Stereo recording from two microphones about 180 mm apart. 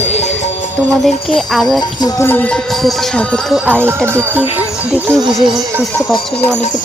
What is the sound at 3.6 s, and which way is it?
Speech, 10° right (ahead or behind).